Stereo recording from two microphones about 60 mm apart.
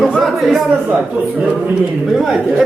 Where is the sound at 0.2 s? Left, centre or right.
Centre.